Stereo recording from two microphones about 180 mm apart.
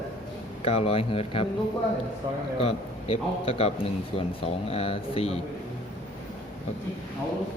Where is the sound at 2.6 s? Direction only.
35° left (ahead or behind).